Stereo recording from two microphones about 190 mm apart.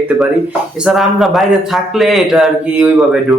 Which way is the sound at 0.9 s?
Centre (ahead or behind).